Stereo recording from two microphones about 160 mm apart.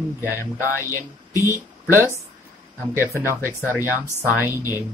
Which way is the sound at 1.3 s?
20° left (ahead or behind).